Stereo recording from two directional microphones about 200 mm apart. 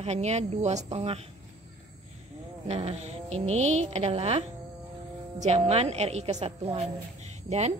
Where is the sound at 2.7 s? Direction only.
30° right (ahead or behind).